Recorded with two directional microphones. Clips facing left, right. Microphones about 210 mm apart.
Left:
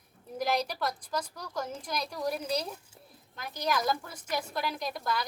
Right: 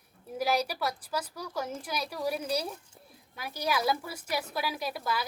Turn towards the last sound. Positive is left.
turn(degrees=-5)  # may be behind; listen again after turning